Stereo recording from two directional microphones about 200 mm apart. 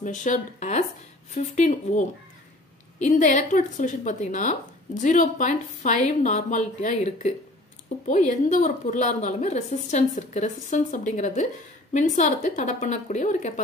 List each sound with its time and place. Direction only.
0.0 s a woman's voice: 40° left (ahead or behind)